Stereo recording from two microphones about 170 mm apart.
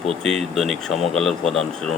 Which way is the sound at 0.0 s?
Centre (ahead or behind).